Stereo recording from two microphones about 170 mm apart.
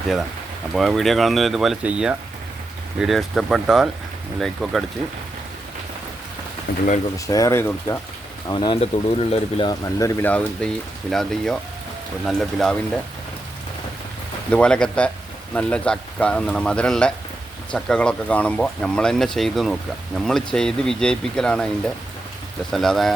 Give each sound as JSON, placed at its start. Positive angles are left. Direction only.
{"t": 0.7, "sound": "speech", "side_deg": 0}
{"t": 6.7, "sound": "speech", "side_deg": 60}
{"t": 7.3, "sound": "speech", "side_deg": 20}
{"t": 8.4, "sound": "speech", "side_deg": 25}
{"t": 14.5, "sound": "speech", "side_deg": 5}
{"t": 22.7, "sound": "speech", "side_deg": 0}